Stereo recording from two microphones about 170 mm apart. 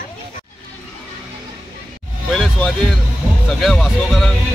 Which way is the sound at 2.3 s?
5° left (ahead or behind).